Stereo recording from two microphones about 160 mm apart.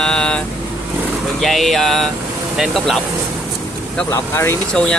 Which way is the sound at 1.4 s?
Centre (ahead or behind).